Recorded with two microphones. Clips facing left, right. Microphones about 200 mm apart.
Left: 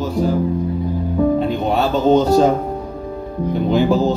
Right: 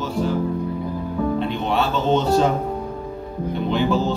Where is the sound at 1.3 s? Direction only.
40° left (ahead or behind).